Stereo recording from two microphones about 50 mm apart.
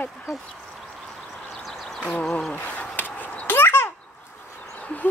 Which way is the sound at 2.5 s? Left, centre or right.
Left.